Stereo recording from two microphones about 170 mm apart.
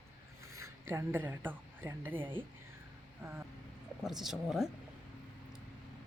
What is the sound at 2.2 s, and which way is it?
Speech, 30° right (ahead or behind).